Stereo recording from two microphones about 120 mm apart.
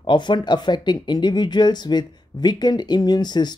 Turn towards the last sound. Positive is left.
turn(degrees=35)  # may be behind; listen again after turning